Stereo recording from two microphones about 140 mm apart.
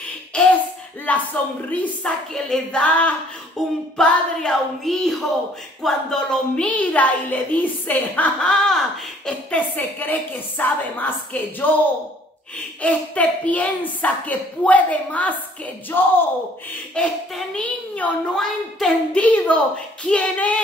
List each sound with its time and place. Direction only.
0.3 s a sound: 10° left (ahead or behind)
1.0 s a woman's voice: 10° left (ahead or behind)
3.6 s music: 5° left (ahead or behind)
5.8 s a woman's voice: 5° left (ahead or behind)
12.8 s a woman's voice: 10° left (ahead or behind)